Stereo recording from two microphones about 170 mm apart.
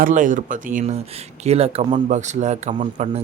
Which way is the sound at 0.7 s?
40° right (ahead or behind).